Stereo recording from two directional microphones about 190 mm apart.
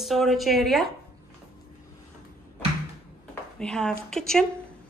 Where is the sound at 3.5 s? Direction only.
5° left (ahead or behind).